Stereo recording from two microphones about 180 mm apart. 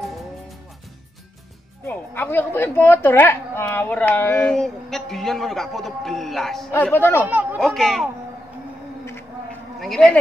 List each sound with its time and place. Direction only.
1.9 s a woman's voice: 10° left (ahead or behind)
6.7 s speech: 10° left (ahead or behind)
7.2 s speech: 10° right (ahead or behind)
7.6 s a woman's voice: centre (ahead or behind)
9.8 s speech: centre (ahead or behind)